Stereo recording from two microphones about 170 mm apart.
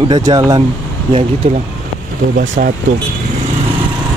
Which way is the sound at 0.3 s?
20° right (ahead or behind).